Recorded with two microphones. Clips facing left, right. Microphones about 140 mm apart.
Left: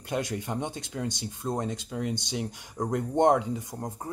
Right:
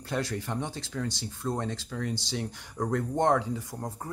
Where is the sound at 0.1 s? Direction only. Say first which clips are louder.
Left 1 dB; 20° left (ahead or behind).